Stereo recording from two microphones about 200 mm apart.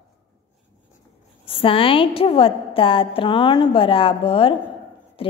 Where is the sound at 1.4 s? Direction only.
25° left (ahead or behind).